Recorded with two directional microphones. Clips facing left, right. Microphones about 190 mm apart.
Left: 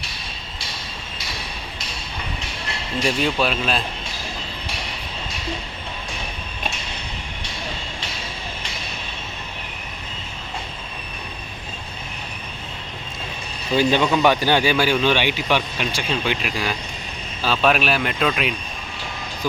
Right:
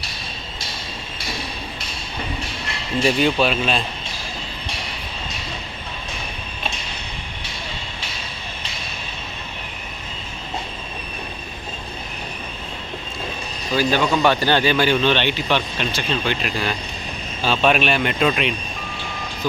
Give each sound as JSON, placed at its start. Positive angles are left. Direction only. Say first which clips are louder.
{"t": 3.0, "sound": "speech", "louder": "right 3 dB", "side_deg": 0}
{"t": 13.7, "sound": "speech", "louder": "left 1 dB", "side_deg": 20}